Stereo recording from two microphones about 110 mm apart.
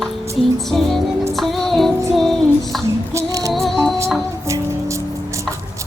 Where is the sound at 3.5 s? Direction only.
Centre (ahead or behind).